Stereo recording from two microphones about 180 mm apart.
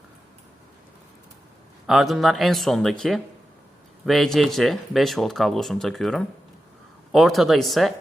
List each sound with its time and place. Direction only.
1.9 s speech: centre (ahead or behind)